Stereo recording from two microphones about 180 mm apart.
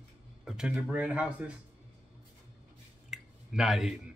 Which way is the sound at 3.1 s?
5° right (ahead or behind).